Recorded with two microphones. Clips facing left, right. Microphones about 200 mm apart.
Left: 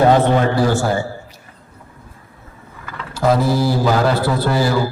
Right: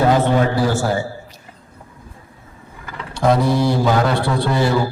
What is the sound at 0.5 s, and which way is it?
Speech, 50° left (ahead or behind).